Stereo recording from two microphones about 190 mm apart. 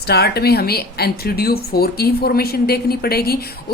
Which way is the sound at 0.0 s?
60° left (ahead or behind).